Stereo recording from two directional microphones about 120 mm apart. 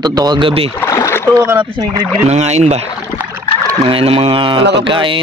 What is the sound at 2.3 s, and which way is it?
Speech, 65° right (ahead or behind).